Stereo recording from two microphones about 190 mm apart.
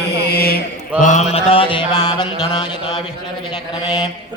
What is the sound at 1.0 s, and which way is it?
Mantra, 40° left (ahead or behind).